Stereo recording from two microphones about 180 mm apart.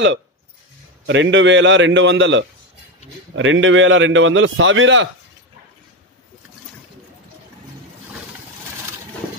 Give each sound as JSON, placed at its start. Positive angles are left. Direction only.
{"t": 1.0, "sound": "a man's voice", "side_deg": -90}